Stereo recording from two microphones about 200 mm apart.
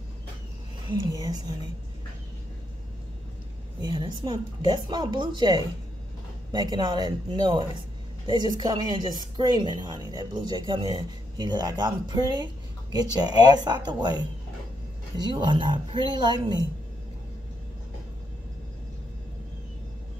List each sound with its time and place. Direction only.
0.8 s a woman's voice: 20° right (ahead or behind)
3.8 s a woman's voice: 20° right (ahead or behind)